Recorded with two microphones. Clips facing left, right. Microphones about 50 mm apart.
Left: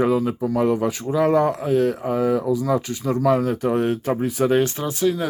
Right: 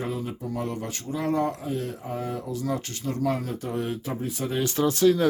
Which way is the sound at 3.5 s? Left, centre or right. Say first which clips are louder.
Left 9 dB; left.